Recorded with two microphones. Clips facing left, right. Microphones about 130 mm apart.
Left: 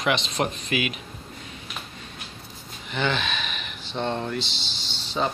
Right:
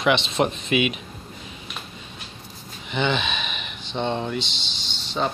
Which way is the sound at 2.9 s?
25° right (ahead or behind).